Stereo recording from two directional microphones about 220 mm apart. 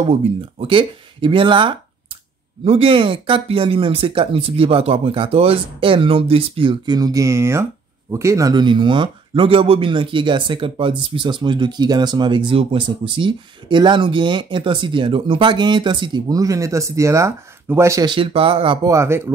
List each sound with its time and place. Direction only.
0.1 s speech: 25° right (ahead or behind)
18.9 s speech: 10° right (ahead or behind)